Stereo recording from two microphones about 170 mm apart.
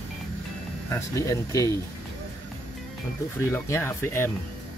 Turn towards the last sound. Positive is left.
turn(degrees=15)  # may be behind; listen again after turning